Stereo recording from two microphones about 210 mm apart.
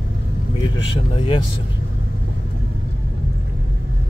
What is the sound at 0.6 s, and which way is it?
Vehicle, 25° left (ahead or behind).